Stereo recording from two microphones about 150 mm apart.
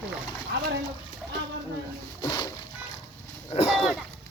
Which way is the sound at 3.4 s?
40° left (ahead or behind).